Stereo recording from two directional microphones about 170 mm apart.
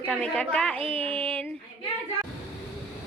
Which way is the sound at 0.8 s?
35° right (ahead or behind).